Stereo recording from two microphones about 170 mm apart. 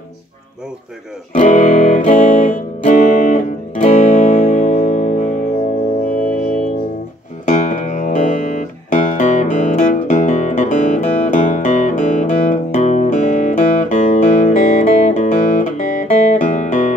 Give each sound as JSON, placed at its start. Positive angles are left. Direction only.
{"t": 1.3, "sound": "music", "side_deg": 45}
{"t": 7.4, "sound": "music", "side_deg": 50}